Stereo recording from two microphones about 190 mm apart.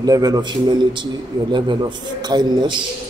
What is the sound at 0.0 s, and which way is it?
A man's voice, 20° right (ahead or behind).